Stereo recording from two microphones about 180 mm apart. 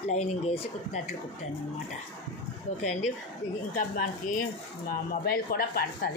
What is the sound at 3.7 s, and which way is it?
Speech, 45° left (ahead or behind).